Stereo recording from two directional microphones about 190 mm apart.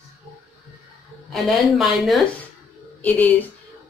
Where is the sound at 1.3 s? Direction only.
Centre (ahead or behind).